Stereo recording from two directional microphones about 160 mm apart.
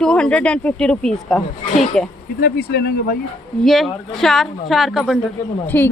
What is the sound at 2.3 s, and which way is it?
Speech, 85° left.